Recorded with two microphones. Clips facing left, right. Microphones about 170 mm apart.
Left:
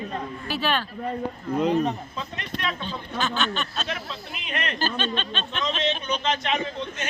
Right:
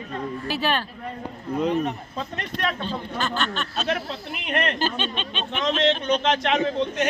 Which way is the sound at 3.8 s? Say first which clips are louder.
Right 6 dB; 55° right (ahead or behind).